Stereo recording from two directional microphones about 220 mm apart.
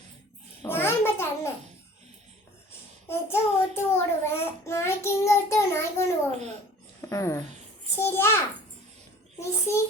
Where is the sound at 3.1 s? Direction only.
10° left (ahead or behind).